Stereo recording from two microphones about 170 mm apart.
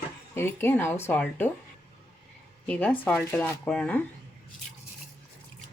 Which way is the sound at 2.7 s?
10° left (ahead or behind).